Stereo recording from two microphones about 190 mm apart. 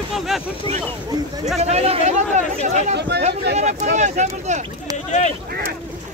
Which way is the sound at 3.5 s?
35° right (ahead or behind).